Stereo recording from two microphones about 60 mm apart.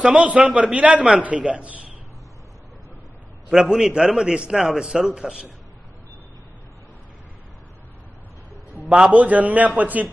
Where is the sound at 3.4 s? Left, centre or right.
Centre.